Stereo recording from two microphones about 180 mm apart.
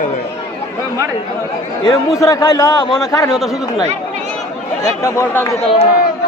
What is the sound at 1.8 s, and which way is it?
A man's voice, 20° left (ahead or behind).